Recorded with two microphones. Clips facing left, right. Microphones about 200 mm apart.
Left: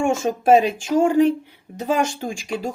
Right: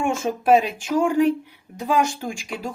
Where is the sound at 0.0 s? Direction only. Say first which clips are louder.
Left 3 dB; 25° left (ahead or behind).